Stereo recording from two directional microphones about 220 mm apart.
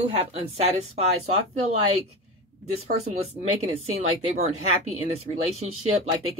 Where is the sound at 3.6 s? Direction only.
30° right (ahead or behind).